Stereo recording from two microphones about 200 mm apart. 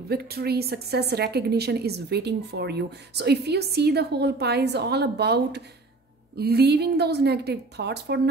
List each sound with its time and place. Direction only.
0.1 s a woman's voice: 50° right (ahead or behind)